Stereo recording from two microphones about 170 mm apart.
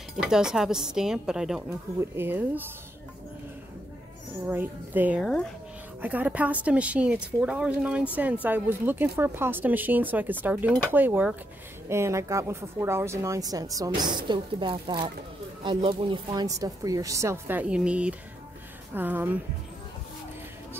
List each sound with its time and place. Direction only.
0.2 s a woman's voice: 5° right (ahead or behind)
4.5 s a woman's voice: 10° right (ahead or behind)
5.2 s speech: 5° left (ahead or behind)
6.0 s a woman's voice: 10° right (ahead or behind)